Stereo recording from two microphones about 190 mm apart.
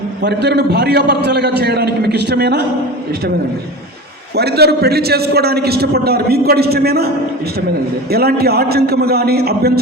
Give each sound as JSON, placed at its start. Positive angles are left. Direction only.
{"t": 0.2, "sound": "a man's voice", "side_deg": -60}
{"t": 4.4, "sound": "a man's voice", "side_deg": -60}
{"t": 8.1, "sound": "a man's voice", "side_deg": -55}